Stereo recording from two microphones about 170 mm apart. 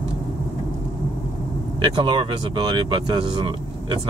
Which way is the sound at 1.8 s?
30° right (ahead or behind).